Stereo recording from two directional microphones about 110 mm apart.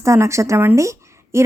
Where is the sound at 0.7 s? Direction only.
25° right (ahead or behind).